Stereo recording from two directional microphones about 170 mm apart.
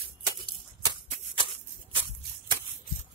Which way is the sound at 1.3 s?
30° right (ahead or behind).